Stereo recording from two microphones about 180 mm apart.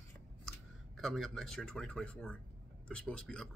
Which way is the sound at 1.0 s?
Centre (ahead or behind).